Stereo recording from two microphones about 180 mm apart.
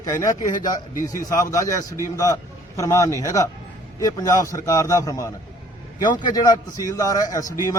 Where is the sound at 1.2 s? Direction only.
15° left (ahead or behind).